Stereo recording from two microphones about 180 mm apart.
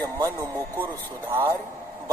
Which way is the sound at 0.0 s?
20° right (ahead or behind).